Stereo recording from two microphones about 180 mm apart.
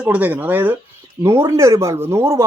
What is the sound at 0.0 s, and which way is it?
Speech, 10° right (ahead or behind).